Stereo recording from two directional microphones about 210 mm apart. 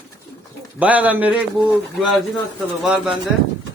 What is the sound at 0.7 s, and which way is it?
Speech, 5° right (ahead or behind).